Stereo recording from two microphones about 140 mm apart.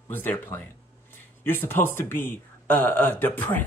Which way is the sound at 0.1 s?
15° left (ahead or behind).